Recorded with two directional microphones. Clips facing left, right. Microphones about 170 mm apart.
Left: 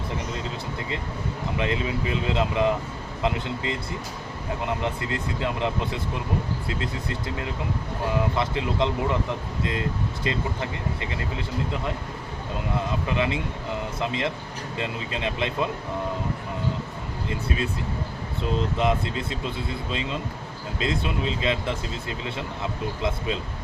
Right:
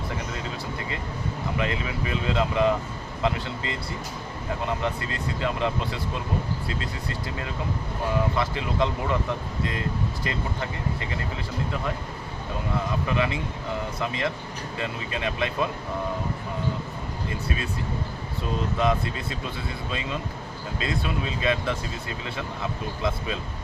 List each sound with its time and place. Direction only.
1.5 s speech: 20° left (ahead or behind)
10.2 s speech: 20° left (ahead or behind)
12.9 s speech: 20° left (ahead or behind)
18.4 s speech: 20° left (ahead or behind)